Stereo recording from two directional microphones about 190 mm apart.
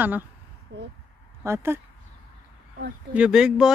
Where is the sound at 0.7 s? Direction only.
70° right (ahead or behind).